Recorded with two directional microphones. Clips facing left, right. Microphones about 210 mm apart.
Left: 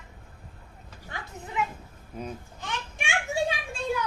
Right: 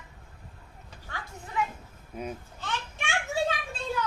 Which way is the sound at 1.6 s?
20° left (ahead or behind).